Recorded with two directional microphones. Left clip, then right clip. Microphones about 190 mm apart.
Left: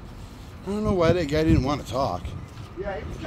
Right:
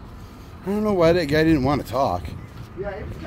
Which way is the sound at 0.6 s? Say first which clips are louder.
Right 4 dB; 40° right (ahead or behind).